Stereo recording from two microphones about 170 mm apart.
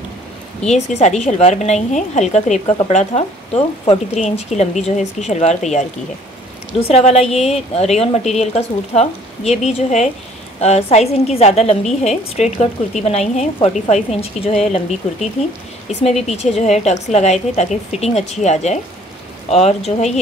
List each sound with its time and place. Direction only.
0.7 s a woman's voice: 40° left (ahead or behind)